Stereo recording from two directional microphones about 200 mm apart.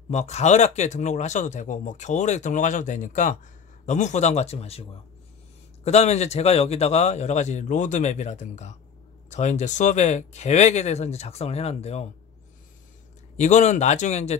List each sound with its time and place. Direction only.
0.1 s speech: 35° left (ahead or behind)
5.9 s speech: 35° left (ahead or behind)
13.4 s speech: 35° left (ahead or behind)